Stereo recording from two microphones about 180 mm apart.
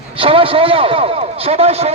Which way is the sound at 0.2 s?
30° right (ahead or behind).